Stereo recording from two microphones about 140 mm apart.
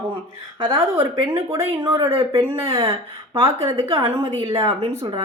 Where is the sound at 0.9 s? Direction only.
35° right (ahead or behind).